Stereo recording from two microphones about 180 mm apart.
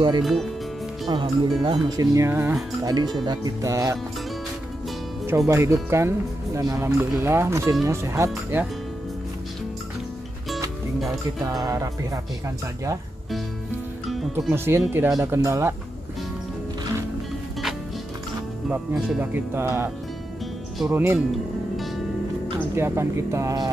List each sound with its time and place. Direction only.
0.2 s speech: centre (ahead or behind)
1.0 s speech: 25° right (ahead or behind)
5.5 s speech: 15° right (ahead or behind)
11.1 s speech: 20° right (ahead or behind)
14.5 s speech: 15° right (ahead or behind)
18.7 s speech: 10° right (ahead or behind)
22.8 s speech: 15° right (ahead or behind)